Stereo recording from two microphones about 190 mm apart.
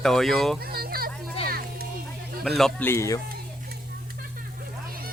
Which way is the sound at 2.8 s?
15° left (ahead or behind).